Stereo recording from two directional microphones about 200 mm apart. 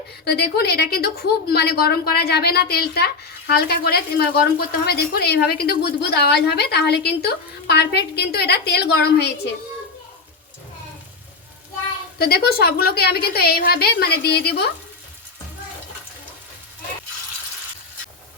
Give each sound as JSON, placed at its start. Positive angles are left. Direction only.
{"t": 0.3, "sound": "a woman's voice", "side_deg": 55}
{"t": 12.2, "sound": "a woman's voice", "side_deg": 50}